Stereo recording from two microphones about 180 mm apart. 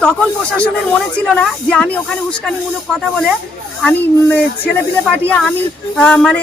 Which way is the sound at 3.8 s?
5° left (ahead or behind).